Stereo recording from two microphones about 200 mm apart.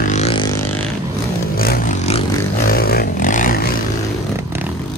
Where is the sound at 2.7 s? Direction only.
50° left (ahead or behind).